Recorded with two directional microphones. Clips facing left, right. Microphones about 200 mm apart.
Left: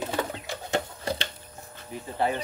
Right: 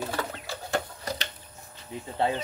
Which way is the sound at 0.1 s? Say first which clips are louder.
Left 3 dB; 20° left (ahead or behind).